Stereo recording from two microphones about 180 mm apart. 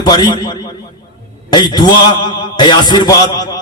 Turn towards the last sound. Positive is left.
turn(degrees=20)  # may be behind; listen again after turning